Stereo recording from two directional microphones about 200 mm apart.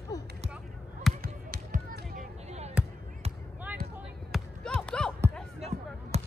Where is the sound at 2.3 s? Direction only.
35° right (ahead or behind).